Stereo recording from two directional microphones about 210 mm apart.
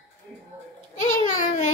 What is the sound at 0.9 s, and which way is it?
Babbling, 40° left (ahead or behind).